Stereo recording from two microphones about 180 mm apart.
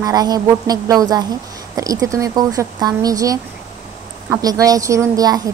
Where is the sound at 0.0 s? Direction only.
20° right (ahead or behind).